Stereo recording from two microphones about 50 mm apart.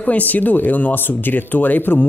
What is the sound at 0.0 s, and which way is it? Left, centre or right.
Speech, left.